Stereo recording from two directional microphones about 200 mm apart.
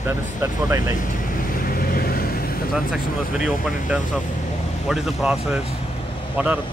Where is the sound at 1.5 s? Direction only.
45° left (ahead or behind).